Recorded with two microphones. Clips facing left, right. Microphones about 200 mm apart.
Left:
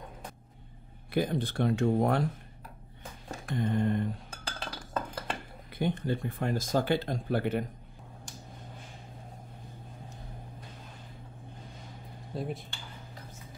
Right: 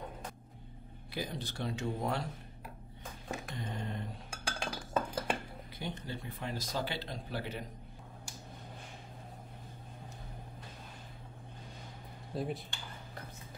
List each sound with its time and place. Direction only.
1.1 s speech: 55° left (ahead or behind)
3.5 s speech: 55° left (ahead or behind)
4.3 s cutlery: 10° right (ahead or behind)
5.8 s speech: 55° left (ahead or behind)
12.4 s speech: centre (ahead or behind)